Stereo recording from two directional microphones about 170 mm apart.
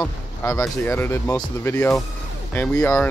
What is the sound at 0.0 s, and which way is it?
Speech, 15° left (ahead or behind).